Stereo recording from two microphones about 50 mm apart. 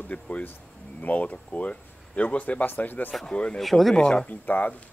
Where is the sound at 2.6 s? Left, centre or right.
Left.